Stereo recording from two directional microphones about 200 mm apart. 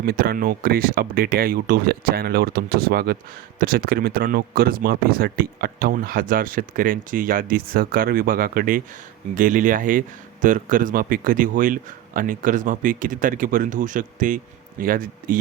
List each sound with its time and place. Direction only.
0.0 s a man's voice: 50° right (ahead or behind)